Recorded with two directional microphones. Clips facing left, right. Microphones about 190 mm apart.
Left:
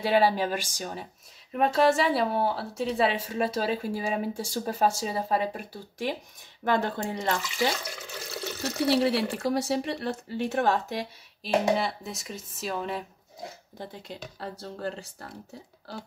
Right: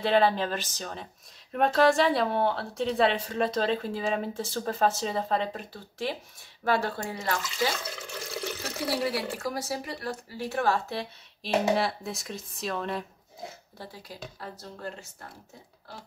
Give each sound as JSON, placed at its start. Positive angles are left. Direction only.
{"t": 0.0, "sound": "speech", "side_deg": 10}
{"t": 8.1, "sound": "water", "side_deg": 5}
{"t": 8.8, "sound": "speech", "side_deg": 25}
{"t": 11.4, "sound": "speech", "side_deg": 0}
{"t": 13.7, "sound": "speech", "side_deg": 25}